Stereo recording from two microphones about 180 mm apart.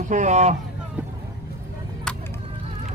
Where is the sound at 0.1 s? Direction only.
40° right (ahead or behind).